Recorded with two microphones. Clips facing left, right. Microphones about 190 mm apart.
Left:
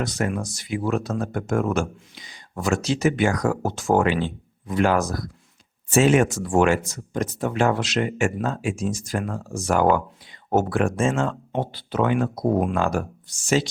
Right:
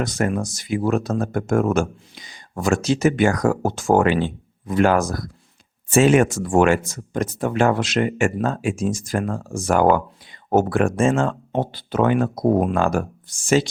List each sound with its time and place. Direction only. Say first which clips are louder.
0.0 s speech: right 3 dB; 50° right (ahead or behind)
12.7 s speech: right 3 dB; 55° right (ahead or behind)